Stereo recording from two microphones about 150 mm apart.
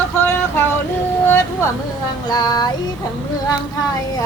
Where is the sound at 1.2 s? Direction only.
15° left (ahead or behind).